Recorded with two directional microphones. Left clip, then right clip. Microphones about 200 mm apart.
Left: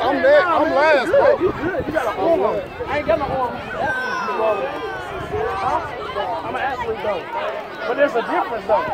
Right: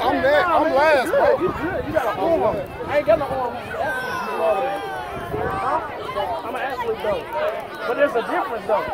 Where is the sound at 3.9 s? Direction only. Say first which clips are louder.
Left 3 dB; 55° right (ahead or behind).